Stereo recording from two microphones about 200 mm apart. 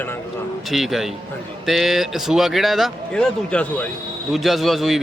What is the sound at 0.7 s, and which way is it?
A man's voice, centre (ahead or behind).